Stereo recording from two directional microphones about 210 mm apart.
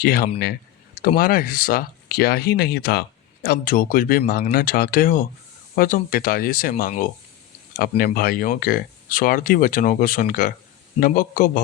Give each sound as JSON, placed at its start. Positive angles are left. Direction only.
{"t": 0.0, "sound": "a man's voice", "side_deg": 45}